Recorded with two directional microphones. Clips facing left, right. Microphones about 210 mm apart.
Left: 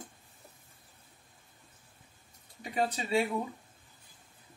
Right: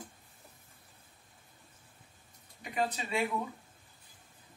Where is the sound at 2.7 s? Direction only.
30° left (ahead or behind).